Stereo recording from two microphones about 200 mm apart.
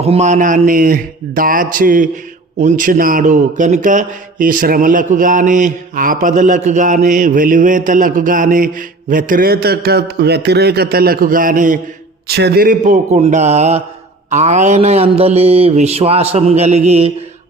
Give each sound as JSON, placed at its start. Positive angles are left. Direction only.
{"t": 0.0, "sound": "a man's voice", "side_deg": -30}
{"t": 12.3, "sound": "a man's voice", "side_deg": -55}